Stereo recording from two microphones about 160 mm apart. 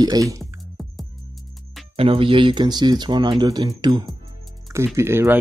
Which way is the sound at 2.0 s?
35° right (ahead or behind).